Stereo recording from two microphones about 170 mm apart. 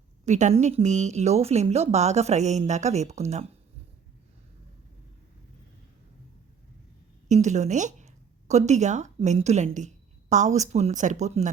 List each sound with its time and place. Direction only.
0.3 s speech: 45° right (ahead or behind)
7.3 s speech: 45° right (ahead or behind)